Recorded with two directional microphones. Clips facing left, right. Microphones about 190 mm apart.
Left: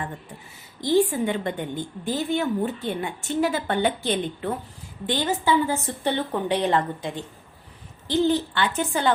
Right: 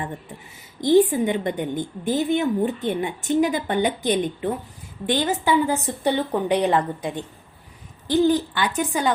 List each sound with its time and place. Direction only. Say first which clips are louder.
0.8 s a woman's voice: right 4 dB; 20° right (ahead or behind)
8.1 s a woman's voice: right 3 dB; 15° right (ahead or behind)